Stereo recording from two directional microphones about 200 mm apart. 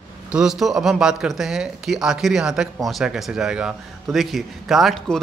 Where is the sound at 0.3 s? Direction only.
5° right (ahead or behind).